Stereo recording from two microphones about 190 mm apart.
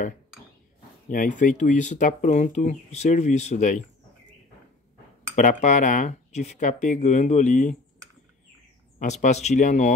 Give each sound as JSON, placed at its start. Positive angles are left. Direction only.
{"t": 1.0, "sound": "speech", "side_deg": 45}
{"t": 5.3, "sound": "speech", "side_deg": 40}
{"t": 9.0, "sound": "speech", "side_deg": 35}